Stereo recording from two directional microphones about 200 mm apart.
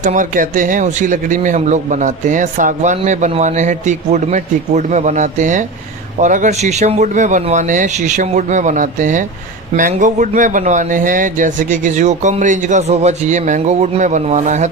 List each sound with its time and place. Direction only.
0.0 s speech: 40° right (ahead or behind)